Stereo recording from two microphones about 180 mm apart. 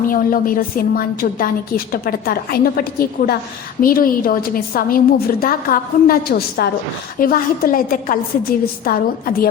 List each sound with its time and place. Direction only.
0.1 s a woman's voice: 50° left (ahead or behind)